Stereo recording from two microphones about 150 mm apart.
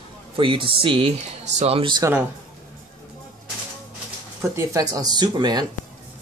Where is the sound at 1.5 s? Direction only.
45° right (ahead or behind).